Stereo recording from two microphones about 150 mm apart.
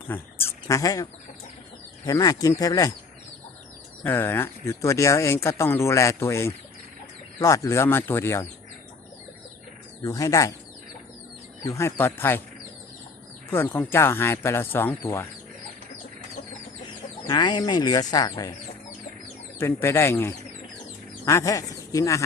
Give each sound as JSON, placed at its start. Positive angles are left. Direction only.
{"t": 0.1, "sound": "speech", "side_deg": 15}
{"t": 2.0, "sound": "speech", "side_deg": 25}
{"t": 4.0, "sound": "speech", "side_deg": 15}
{"t": 10.0, "sound": "speech", "side_deg": 20}
{"t": 11.6, "sound": "speech", "side_deg": 20}
{"t": 13.5, "sound": "speech", "side_deg": 15}
{"t": 17.2, "sound": "speech", "side_deg": 30}
{"t": 19.5, "sound": "speech", "side_deg": 15}